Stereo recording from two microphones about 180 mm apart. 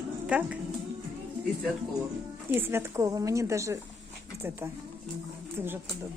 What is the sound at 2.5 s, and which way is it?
A woman's voice, 15° right (ahead or behind).